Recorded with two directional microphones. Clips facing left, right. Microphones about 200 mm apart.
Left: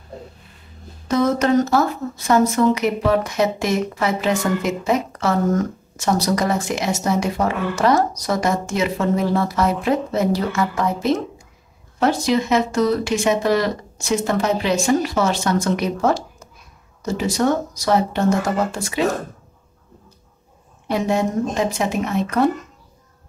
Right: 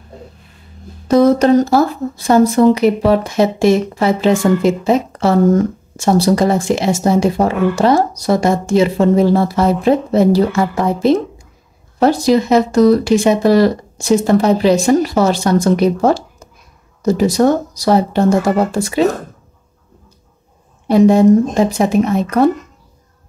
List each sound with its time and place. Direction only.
1.0 s speech: 35° right (ahead or behind)
20.9 s speech: 35° right (ahead or behind)